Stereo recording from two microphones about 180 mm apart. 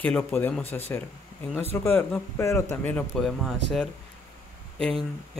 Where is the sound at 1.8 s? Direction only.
10° left (ahead or behind).